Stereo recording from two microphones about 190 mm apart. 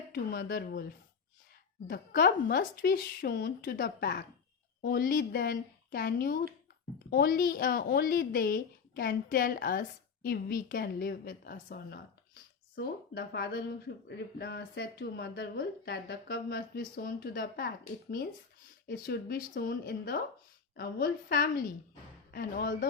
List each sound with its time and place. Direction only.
0.1 s a woman's voice: 55° left (ahead or behind)
1.9 s a woman's voice: 55° left (ahead or behind)
18.9 s a woman's voice: 55° left (ahead or behind)